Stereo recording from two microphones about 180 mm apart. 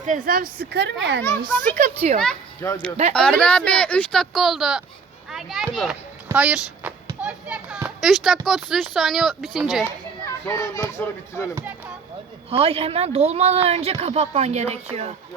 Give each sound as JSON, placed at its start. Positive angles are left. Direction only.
{"t": 0.0, "sound": "speech", "side_deg": -45}
{"t": 1.7, "sound": "speech", "side_deg": -40}
{"t": 2.6, "sound": "speech", "side_deg": 15}
{"t": 3.1, "sound": "a child's voice", "side_deg": 5}
{"t": 6.2, "sound": "a sound", "side_deg": -5}
{"t": 8.4, "sound": "speech", "side_deg": 0}
{"t": 9.8, "sound": "a child's voice", "side_deg": 15}
{"t": 12.5, "sound": "speech", "side_deg": -30}